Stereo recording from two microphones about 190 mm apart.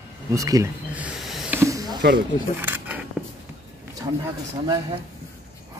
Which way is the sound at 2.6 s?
10° right (ahead or behind).